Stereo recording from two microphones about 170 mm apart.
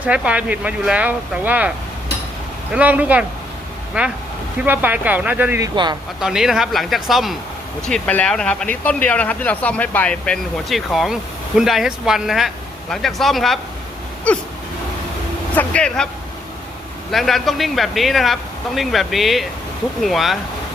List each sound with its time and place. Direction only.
0.0 s speech: 5° right (ahead or behind)
2.7 s speech: 10° right (ahead or behind)
4.6 s speech: 10° right (ahead or behind)
5.7 s speech: 25° right (ahead or behind)
6.1 s speech: 5° right (ahead or behind)
15.5 s speech: 5° left (ahead or behind)
17.1 s speech: centre (ahead or behind)